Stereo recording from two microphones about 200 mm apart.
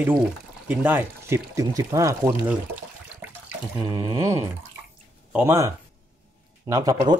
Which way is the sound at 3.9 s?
20° right (ahead or behind).